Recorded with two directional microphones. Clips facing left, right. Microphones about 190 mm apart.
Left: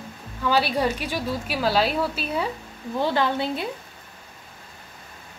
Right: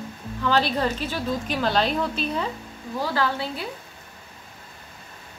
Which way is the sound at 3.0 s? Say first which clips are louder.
Left 3 dB; 20° left (ahead or behind).